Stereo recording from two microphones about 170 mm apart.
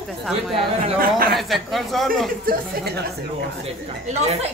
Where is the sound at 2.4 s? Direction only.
70° right (ahead or behind).